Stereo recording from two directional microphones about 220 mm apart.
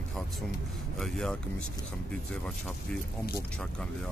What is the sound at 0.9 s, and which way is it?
Speech, centre (ahead or behind).